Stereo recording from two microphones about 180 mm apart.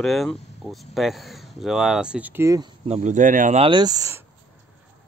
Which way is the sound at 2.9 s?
40° right (ahead or behind).